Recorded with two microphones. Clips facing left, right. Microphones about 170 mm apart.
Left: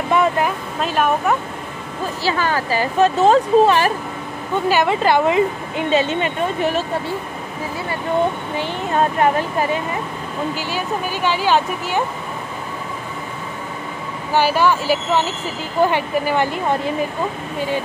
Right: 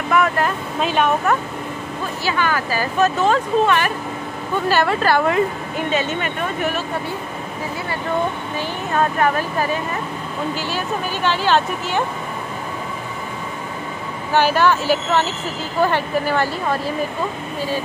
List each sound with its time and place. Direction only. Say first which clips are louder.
0.1 s speech: left 1 dB; 30° left (ahead or behind)
0.7 s speech: right 1 dB; centre (ahead or behind)
2.2 s speech: left 1 dB; 30° left (ahead or behind)
4.6 s a woman's voice: left 1 dB; 15° left (ahead or behind)
5.9 s speech: left 5 dB; 30° left (ahead or behind)
8.5 s speech: left 1 dB; 25° left (ahead or behind)
10.5 s a woman's voice: even; 15° left (ahead or behind)
14.3 s a woman's voice: even; 10° left (ahead or behind)